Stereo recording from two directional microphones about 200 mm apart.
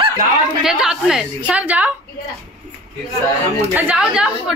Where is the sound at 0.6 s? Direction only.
5° right (ahead or behind).